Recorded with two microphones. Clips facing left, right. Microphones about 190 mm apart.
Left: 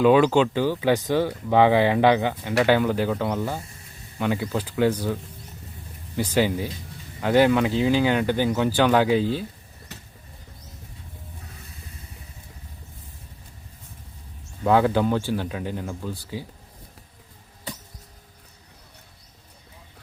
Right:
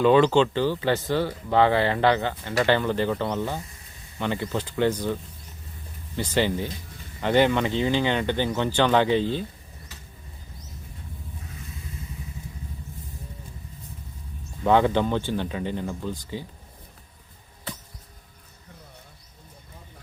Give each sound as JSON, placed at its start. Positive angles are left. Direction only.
{"t": 0.0, "sound": "speech", "side_deg": 10}
{"t": 9.9, "sound": "a sound", "side_deg": 65}
{"t": 14.6, "sound": "speech", "side_deg": 0}